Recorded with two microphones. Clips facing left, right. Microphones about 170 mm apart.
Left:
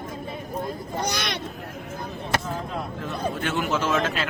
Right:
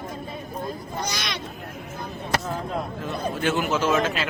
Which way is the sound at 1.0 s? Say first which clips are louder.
Left 4 dB; 55° left (ahead or behind).